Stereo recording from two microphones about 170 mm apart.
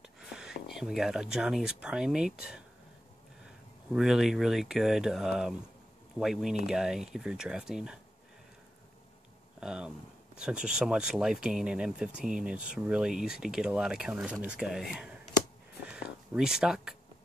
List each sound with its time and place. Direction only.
0.0 s speech: 5° right (ahead or behind)
9.6 s speech: 5° right (ahead or behind)
15.8 s a sound: 5° right (ahead or behind)